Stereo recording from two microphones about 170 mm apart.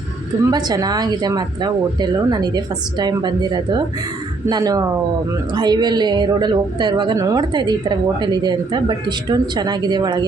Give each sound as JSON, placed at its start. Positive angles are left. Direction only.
{"t": 0.5, "sound": "a woman's voice", "side_deg": -25}